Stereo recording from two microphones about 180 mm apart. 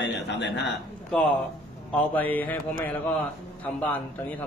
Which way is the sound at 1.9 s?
10° left (ahead or behind).